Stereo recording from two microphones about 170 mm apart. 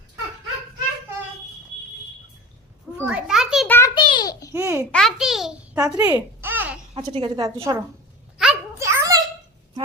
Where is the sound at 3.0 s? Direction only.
5° right (ahead or behind).